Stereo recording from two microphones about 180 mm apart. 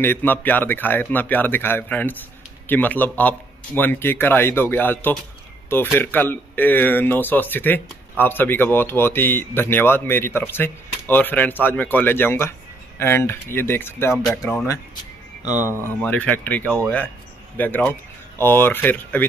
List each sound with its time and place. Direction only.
0.0 s speech: 10° left (ahead or behind)
14.1 s speech: centre (ahead or behind)
15.5 s speech: 10° right (ahead or behind)
15.8 s speech: 10° left (ahead or behind)